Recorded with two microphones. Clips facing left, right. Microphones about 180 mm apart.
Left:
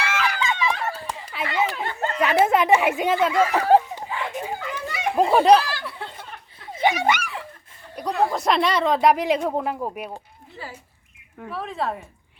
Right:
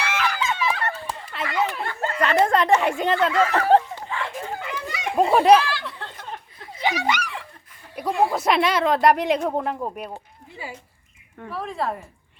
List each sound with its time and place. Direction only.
0.0 s a sound: centre (ahead or behind)
5.1 s speech: centre (ahead or behind)
5.8 s chatter: 5° left (ahead or behind)
6.7 s a sound: 50° left (ahead or behind)
7.9 s speech: 5° right (ahead or behind)
10.6 s speech: 15° right (ahead or behind)
11.3 s speech: centre (ahead or behind)